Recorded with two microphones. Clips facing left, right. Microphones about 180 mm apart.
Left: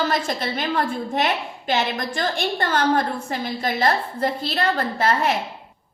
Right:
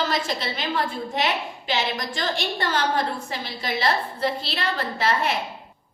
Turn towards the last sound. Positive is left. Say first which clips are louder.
# left 3 dB
turn(degrees=50)  # may be behind; listen again after turning